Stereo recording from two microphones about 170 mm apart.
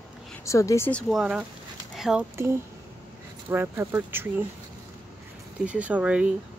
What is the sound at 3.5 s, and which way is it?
Speech, 10° right (ahead or behind).